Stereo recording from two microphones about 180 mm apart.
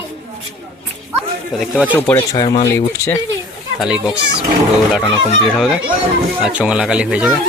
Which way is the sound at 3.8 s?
5° right (ahead or behind).